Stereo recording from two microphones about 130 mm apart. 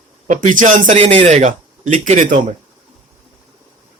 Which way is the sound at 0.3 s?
75° right (ahead or behind).